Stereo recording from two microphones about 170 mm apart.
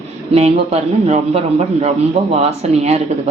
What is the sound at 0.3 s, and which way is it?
A man's voice, 40° right (ahead or behind).